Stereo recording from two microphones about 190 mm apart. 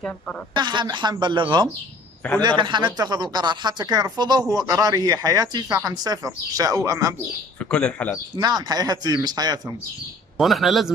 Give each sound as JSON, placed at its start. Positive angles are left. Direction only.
{"t": 0.6, "sound": "speech", "side_deg": -25}
{"t": 7.7, "sound": "speech", "side_deg": 5}
{"t": 8.4, "sound": "speech", "side_deg": -20}
{"t": 10.3, "sound": "a man's voice", "side_deg": 0}